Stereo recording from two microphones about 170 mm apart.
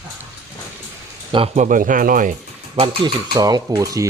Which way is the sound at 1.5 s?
50° right (ahead or behind).